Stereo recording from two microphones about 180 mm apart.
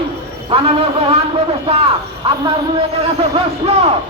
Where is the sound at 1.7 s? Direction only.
35° right (ahead or behind).